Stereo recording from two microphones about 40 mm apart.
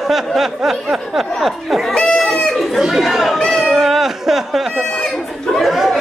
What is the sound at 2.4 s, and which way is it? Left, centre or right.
Chatter, centre.